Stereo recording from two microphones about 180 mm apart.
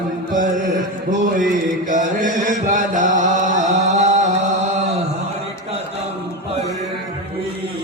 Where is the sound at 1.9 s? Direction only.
45° right (ahead or behind).